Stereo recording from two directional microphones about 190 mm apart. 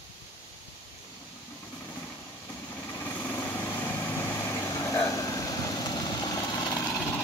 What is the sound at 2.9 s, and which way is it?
Vehicle, 10° left (ahead or behind).